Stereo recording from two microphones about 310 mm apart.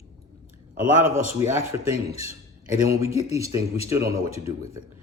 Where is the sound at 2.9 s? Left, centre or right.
Centre.